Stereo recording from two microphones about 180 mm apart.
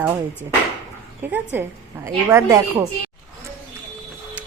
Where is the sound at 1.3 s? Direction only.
10° right (ahead or behind).